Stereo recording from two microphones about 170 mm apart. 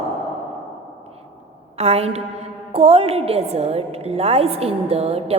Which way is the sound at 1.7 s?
35° right (ahead or behind).